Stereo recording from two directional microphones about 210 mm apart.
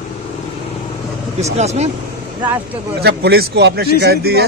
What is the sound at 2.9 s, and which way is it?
Speech, 50° right (ahead or behind).